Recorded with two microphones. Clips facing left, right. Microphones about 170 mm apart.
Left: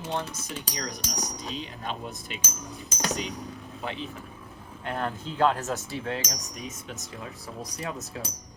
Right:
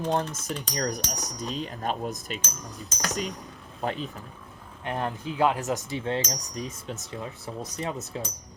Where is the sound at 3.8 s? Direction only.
40° right (ahead or behind).